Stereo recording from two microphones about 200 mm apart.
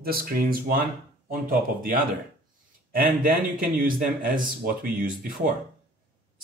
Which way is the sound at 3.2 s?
45° right (ahead or behind).